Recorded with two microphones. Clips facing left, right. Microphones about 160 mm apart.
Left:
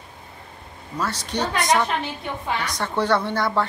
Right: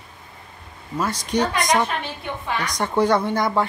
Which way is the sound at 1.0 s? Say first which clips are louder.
Right 4 dB; 10° right (ahead or behind).